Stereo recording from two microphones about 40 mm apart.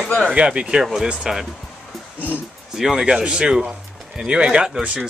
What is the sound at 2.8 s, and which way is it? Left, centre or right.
Speech, centre.